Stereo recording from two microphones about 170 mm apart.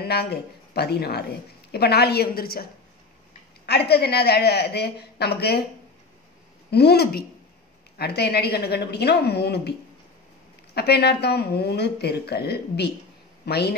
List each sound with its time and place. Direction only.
0.0 s speech: 70° left (ahead or behind)
6.7 s speech: 70° left (ahead or behind)